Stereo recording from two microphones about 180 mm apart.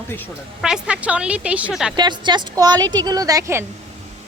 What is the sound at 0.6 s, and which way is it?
A woman's voice, 5° right (ahead or behind).